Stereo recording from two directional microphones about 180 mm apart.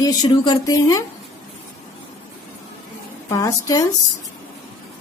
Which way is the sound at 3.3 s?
20° left (ahead or behind).